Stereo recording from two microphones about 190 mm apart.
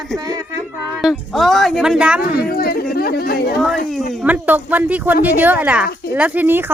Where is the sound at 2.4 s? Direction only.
55° left (ahead or behind).